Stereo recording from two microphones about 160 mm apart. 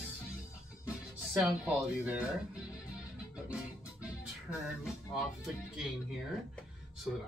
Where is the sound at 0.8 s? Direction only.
5° right (ahead or behind).